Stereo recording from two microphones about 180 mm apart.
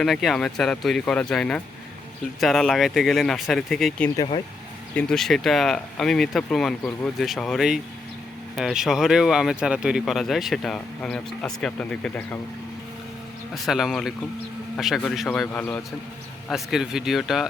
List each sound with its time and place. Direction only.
0.0 s speech: centre (ahead or behind)
13.5 s speech: centre (ahead or behind)
16.5 s speech: centre (ahead or behind)